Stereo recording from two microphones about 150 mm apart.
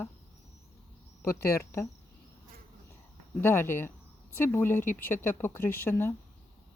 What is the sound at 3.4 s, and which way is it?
Speech, 15° left (ahead or behind).